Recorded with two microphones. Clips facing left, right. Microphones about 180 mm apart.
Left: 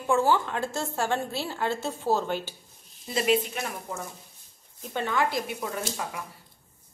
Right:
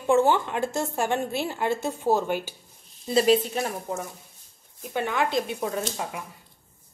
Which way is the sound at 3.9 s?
20° right (ahead or behind).